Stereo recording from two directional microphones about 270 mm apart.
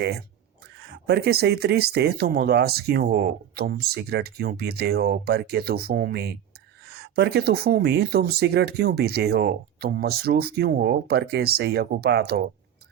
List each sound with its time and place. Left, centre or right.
0.0 s speech: right